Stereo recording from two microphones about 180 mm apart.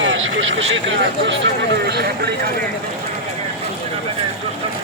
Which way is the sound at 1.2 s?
70° right (ahead or behind).